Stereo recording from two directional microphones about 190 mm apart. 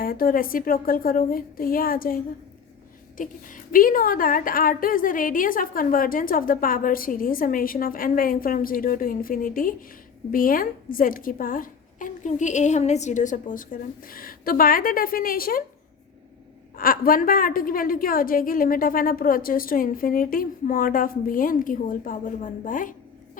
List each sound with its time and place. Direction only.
0.0 s a woman's voice: 50° left (ahead or behind)
16.7 s a woman's voice: 50° left (ahead or behind)